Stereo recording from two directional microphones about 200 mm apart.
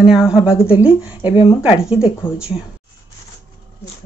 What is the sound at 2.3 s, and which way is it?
Dog, 10° left (ahead or behind).